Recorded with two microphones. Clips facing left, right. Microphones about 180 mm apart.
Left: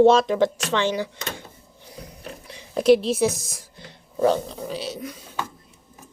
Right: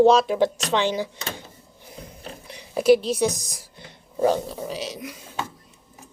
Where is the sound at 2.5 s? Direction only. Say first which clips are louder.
Even; 5° right (ahead or behind).